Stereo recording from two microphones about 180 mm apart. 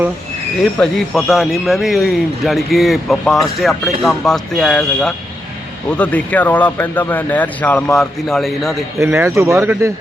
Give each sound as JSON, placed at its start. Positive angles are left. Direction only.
{"t": 0.6, "sound": "speech", "side_deg": 0}
{"t": 9.0, "sound": "speech", "side_deg": -15}